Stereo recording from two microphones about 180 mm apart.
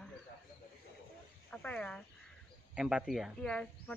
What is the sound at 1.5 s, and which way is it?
Speech, 5° left (ahead or behind).